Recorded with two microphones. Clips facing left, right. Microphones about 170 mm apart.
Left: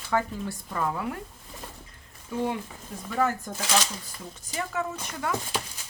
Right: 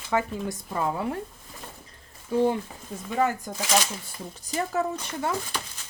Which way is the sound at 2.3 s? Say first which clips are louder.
Right 7 dB; 30° right (ahead or behind).